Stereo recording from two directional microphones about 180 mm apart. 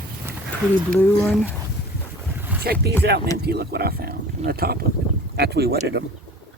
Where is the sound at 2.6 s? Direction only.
60° right (ahead or behind).